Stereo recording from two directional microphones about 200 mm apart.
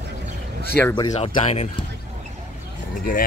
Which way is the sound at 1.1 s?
30° left (ahead or behind).